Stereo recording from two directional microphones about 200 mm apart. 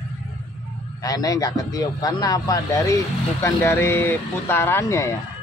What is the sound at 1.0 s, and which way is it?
A man's voice, 20° left (ahead or behind).